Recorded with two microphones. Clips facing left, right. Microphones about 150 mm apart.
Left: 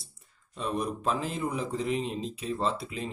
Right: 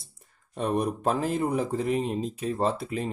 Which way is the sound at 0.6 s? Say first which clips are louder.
Right 5 dB; 55° right (ahead or behind).